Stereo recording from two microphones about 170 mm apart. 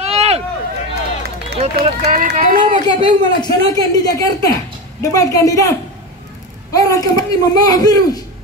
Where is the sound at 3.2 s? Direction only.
25° left (ahead or behind).